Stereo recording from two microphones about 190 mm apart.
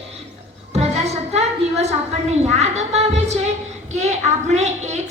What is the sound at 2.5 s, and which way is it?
A woman's voice, 35° right (ahead or behind).